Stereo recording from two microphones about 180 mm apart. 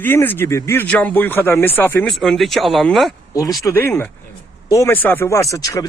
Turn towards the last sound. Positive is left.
turn(degrees=20)  # may be behind; listen again after turning